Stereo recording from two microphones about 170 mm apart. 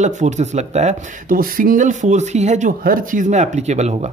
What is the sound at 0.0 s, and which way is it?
Speech, 45° right (ahead or behind).